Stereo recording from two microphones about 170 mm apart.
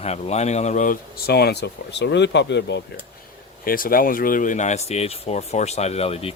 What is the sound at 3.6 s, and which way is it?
Speech, 55° left (ahead or behind).